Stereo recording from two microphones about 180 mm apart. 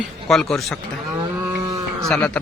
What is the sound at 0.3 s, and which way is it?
Speech, centre (ahead or behind).